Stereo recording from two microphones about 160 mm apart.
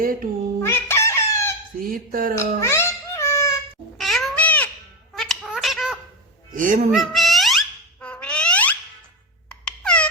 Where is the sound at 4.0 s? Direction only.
Centre (ahead or behind).